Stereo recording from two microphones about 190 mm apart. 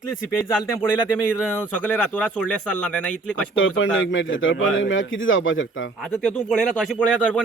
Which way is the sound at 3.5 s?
90° left.